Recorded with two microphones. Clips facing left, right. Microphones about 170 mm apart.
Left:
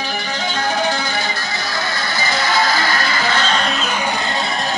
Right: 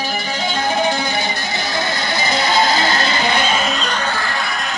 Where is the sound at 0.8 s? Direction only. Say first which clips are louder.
Right 2 dB; 15° right (ahead or behind).